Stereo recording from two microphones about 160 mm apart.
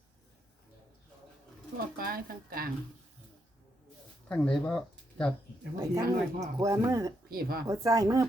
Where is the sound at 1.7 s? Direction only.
65° right (ahead or behind).